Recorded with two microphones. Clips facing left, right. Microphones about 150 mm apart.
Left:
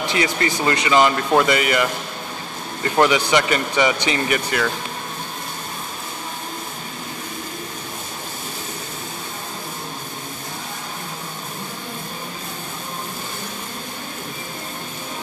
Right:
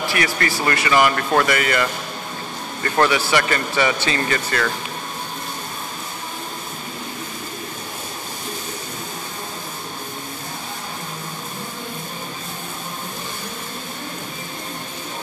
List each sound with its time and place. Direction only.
0.0 s speech: 20° left (ahead or behind)